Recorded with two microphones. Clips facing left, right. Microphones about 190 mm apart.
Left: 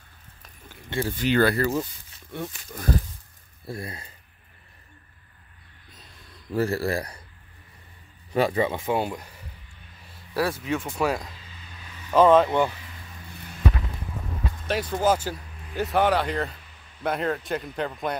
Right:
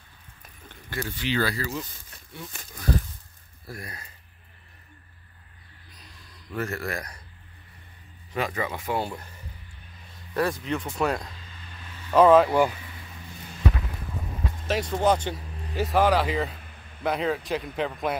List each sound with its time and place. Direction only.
1.0 s speech: 45° left (ahead or behind)
3.6 s speech: 25° left (ahead or behind)
6.5 s speech: 30° left (ahead or behind)
8.4 s speech: 30° left (ahead or behind)
9.0 s speech: 10° left (ahead or behind)
14.7 s speech: centre (ahead or behind)